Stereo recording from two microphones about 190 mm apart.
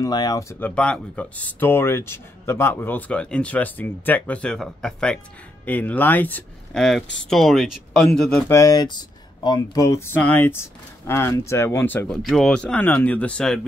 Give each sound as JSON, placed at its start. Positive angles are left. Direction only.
{"t": 0.0, "sound": "speech", "side_deg": 20}